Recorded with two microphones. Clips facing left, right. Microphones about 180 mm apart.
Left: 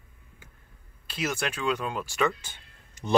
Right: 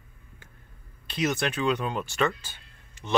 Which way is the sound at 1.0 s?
5° left (ahead or behind).